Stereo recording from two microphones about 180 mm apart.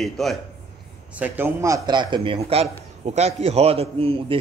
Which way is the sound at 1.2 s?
10° right (ahead or behind).